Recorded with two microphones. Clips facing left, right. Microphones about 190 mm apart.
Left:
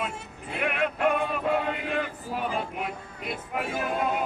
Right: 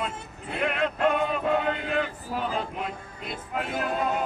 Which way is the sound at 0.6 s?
5° left (ahead or behind).